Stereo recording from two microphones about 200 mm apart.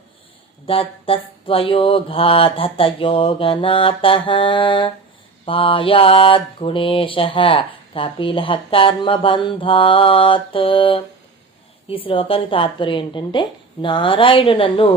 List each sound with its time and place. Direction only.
0.7 s mantra: 25° left (ahead or behind)
12.0 s mantra: 25° left (ahead or behind)